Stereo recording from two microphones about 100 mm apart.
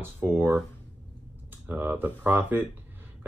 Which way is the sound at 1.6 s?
20° right (ahead or behind).